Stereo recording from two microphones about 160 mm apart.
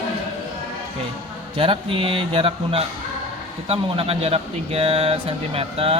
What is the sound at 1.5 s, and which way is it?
Speech, 35° right (ahead or behind).